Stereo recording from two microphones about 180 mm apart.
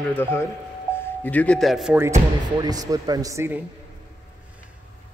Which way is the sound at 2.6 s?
20° right (ahead or behind).